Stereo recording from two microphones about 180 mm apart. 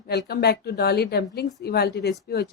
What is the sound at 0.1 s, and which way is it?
Speech, 65° left (ahead or behind).